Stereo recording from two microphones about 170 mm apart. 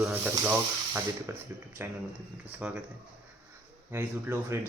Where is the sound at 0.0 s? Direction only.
10° right (ahead or behind).